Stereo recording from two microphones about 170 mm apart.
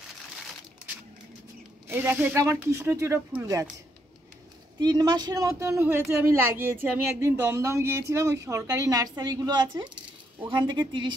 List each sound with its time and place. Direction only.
1.9 s speech: 10° right (ahead or behind)
4.7 s a woman's voice: 25° right (ahead or behind)